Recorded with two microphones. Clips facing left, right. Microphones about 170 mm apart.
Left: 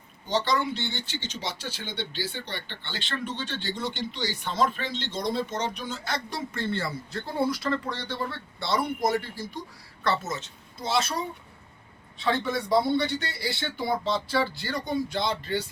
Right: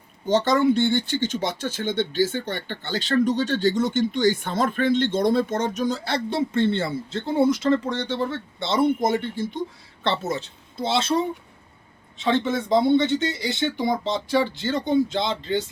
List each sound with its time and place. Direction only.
0.3 s a man's voice: 50° right (ahead or behind); by 15.6 s 20° right (ahead or behind)